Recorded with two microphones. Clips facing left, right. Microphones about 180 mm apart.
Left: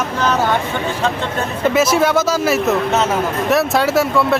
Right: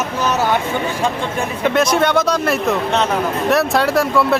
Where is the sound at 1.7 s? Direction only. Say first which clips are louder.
Left 1 dB; 5° left (ahead or behind).